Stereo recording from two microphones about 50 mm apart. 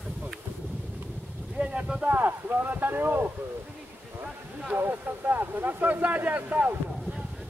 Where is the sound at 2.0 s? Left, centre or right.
Right.